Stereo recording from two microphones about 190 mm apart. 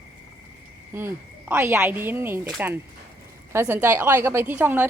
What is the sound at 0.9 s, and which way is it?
Speech, 15° right (ahead or behind).